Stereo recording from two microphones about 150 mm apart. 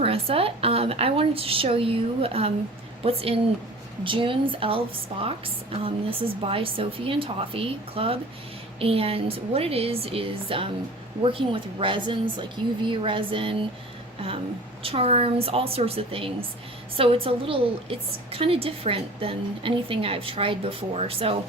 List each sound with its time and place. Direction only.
0.0 s a woman's voice: 40° right (ahead or behind)
5.8 s a woman's voice: 40° right (ahead or behind)
14.8 s a woman's voice: 40° right (ahead or behind)